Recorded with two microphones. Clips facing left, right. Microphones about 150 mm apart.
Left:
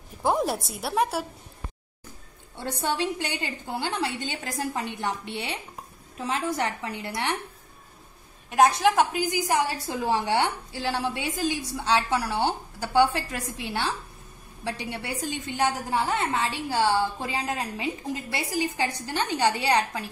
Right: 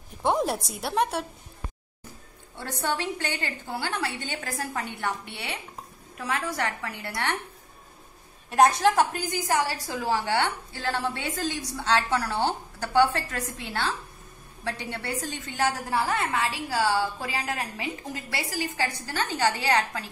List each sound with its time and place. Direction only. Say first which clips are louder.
0.2 s a woman's voice: even; centre (ahead or behind)
2.6 s a woman's voice: left 2 dB; 20° left (ahead or behind)
8.5 s a woman's voice: even; centre (ahead or behind)
8.9 s a woman's voice: left 1 dB; 15° left (ahead or behind)